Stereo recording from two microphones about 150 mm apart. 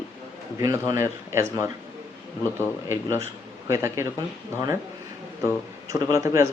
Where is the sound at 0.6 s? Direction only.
25° right (ahead or behind).